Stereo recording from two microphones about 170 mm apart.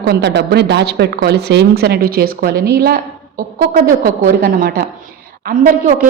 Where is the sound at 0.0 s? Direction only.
80° right; by 4.9 s 65° right (ahead or behind).